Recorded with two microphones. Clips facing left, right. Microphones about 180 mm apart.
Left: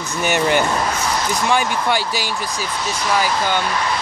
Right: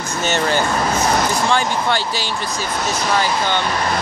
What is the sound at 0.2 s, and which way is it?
Speech, 15° left (ahead or behind).